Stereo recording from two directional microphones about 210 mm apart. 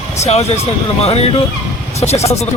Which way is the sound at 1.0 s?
30° left (ahead or behind).